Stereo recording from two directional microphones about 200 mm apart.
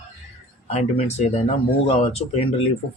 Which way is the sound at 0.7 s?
30° left (ahead or behind).